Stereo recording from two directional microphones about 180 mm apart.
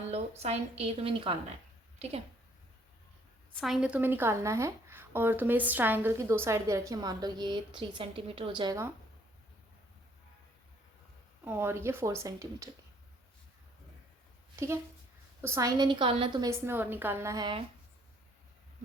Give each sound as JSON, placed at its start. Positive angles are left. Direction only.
{"t": 0.1, "sound": "a woman's voice", "side_deg": -35}
{"t": 3.5, "sound": "a woman's voice", "side_deg": 0}
{"t": 11.4, "sound": "a woman's voice", "side_deg": -15}
{"t": 15.4, "sound": "a woman's voice", "side_deg": -15}